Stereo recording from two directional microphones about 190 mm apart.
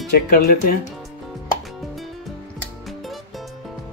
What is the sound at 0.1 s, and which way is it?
Speech, 55° left (ahead or behind).